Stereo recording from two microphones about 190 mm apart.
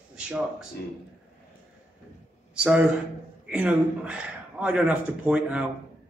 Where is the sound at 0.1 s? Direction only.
5° right (ahead or behind).